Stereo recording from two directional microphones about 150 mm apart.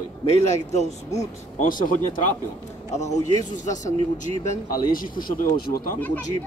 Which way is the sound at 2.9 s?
50° left (ahead or behind).